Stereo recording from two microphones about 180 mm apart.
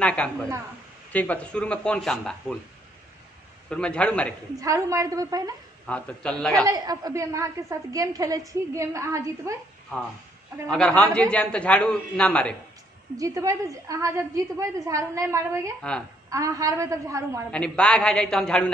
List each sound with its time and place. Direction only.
0.0 s a man's voice: 5° left (ahead or behind)
3.7 s a man's voice: 5° left (ahead or behind)
4.6 s a woman's voice: 20° right (ahead or behind)
5.9 s a man's voice: 5° left (ahead or behind)
6.6 s a woman's voice: 20° right (ahead or behind)
10.7 s a man's voice: 5° left (ahead or behind)
13.2 s a woman's voice: 20° right (ahead or behind)
17.5 s a man's voice: 5° left (ahead or behind)